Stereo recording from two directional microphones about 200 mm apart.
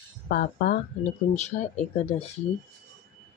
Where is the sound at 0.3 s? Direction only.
50° left (ahead or behind).